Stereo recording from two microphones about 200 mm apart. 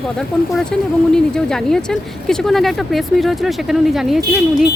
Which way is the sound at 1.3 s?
5° left (ahead or behind).